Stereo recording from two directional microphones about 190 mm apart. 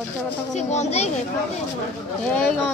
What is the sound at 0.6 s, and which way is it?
Speech, 35° left (ahead or behind).